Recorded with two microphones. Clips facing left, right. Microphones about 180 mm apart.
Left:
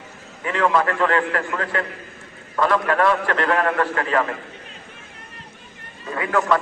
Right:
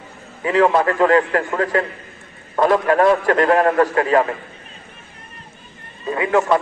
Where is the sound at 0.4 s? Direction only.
35° right (ahead or behind).